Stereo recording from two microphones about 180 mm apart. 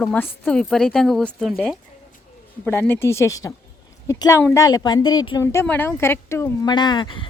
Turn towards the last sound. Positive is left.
turn(degrees=25)  # may be behind; listen again after turning